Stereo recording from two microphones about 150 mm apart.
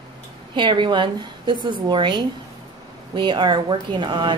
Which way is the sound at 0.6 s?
35° right (ahead or behind).